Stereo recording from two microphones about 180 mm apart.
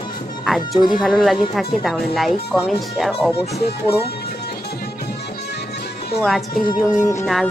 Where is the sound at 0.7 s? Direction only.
25° left (ahead or behind).